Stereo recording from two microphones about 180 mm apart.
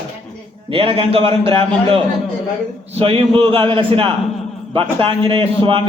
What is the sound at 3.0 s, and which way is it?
A man's voice, 30° right (ahead or behind).